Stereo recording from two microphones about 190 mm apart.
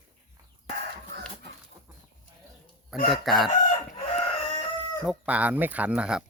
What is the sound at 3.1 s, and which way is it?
Speech, centre (ahead or behind).